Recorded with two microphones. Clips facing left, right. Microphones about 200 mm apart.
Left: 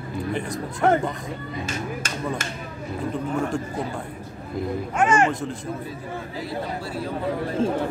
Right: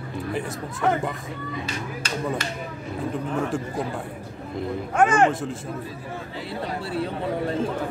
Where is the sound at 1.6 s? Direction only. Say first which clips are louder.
Left 2 dB; 50° left (ahead or behind).